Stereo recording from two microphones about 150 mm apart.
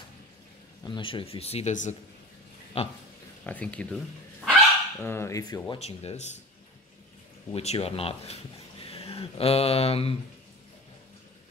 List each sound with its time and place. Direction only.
0.8 s speech: 35° left (ahead or behind); by 2.0 s 55° left (ahead or behind)
2.8 s speech: 40° left (ahead or behind)
3.4 s speech: 10° left (ahead or behind)
5.0 s speech: 15° left (ahead or behind)
5.8 s speech: 45° left (ahead or behind)
7.5 s speech: 40° left (ahead or behind)